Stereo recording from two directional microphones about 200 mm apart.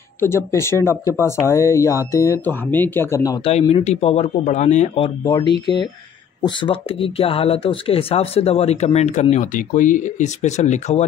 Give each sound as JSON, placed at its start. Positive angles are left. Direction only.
{"t": 0.5, "sound": "speech", "side_deg": 15}
{"t": 3.4, "sound": "speech", "side_deg": 30}
{"t": 5.2, "sound": "speech", "side_deg": 20}